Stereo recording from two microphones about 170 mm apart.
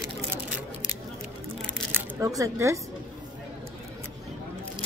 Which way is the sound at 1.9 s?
20° right (ahead or behind).